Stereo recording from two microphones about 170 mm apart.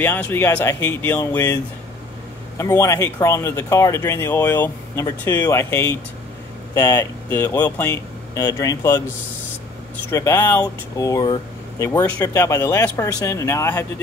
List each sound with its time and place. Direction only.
0.0 s speech: 10° left (ahead or behind)
10.1 s speech: 15° left (ahead or behind)